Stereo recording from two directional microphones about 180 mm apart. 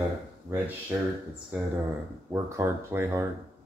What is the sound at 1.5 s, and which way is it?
Speech, 5° right (ahead or behind).